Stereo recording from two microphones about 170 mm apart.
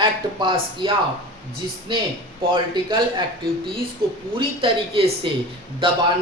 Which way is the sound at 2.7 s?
25° right (ahead or behind).